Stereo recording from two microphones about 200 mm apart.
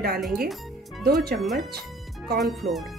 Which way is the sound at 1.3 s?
Centre (ahead or behind).